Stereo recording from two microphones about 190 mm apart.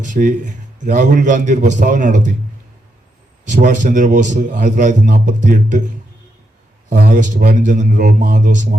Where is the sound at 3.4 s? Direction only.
40° right (ahead or behind).